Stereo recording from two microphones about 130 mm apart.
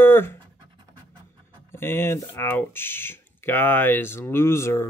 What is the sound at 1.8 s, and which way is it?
Speech, 20° left (ahead or behind).